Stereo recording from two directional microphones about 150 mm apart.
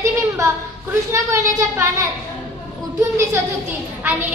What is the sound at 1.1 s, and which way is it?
Speech, 15° right (ahead or behind).